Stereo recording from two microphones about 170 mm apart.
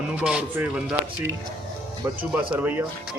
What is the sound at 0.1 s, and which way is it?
Speech, 5° right (ahead or behind).